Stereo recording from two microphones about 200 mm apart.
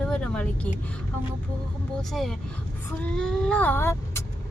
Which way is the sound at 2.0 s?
Centre (ahead or behind).